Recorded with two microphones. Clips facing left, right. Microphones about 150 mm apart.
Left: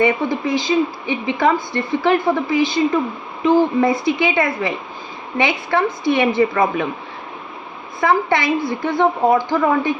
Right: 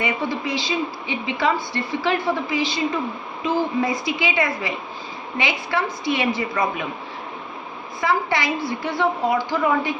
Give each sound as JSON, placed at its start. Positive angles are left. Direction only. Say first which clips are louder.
{"t": 0.0, "sound": "a woman's voice", "louder": "left 7 dB", "side_deg": 50}
{"t": 8.0, "sound": "a woman's voice", "louder": "left 5 dB", "side_deg": 50}